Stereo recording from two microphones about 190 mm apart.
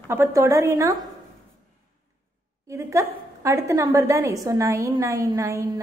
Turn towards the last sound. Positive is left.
turn(degrees=-15)  # may be behind; listen again after turning